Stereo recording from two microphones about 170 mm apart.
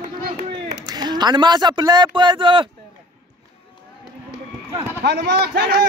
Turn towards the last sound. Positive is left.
turn(degrees=-60)  # may be behind; listen again after turning